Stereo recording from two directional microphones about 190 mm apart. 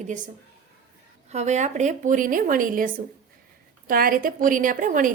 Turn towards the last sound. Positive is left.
turn(degrees=-45)  # may be behind; listen again after turning